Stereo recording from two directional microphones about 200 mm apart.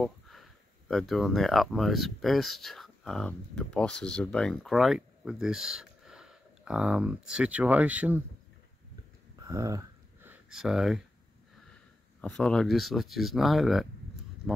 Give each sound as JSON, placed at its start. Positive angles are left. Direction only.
{"t": 0.0, "sound": "speech", "side_deg": 0}
{"t": 9.4, "sound": "a sound", "side_deg": -15}
{"t": 12.2, "sound": "speech", "side_deg": 5}